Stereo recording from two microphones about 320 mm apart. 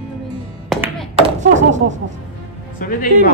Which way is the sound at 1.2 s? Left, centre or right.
Right.